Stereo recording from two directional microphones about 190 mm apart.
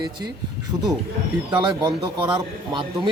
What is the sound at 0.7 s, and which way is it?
Speech, 20° right (ahead or behind).